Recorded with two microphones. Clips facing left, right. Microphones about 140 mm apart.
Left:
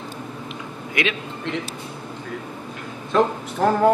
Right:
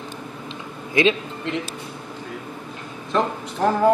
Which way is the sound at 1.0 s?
30° right (ahead or behind).